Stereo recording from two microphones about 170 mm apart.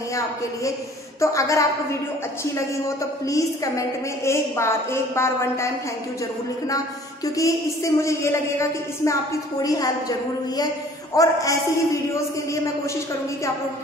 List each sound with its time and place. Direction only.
1.2 s a woman's voice: 20° left (ahead or behind)
3.3 s a woman's voice: 20° left (ahead or behind)
7.3 s a woman's voice: 20° left (ahead or behind)